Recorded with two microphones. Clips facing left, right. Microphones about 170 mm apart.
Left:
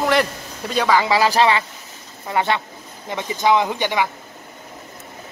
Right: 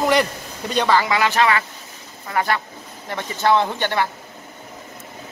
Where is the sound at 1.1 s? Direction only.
30° left (ahead or behind); by 4.0 s 15° left (ahead or behind).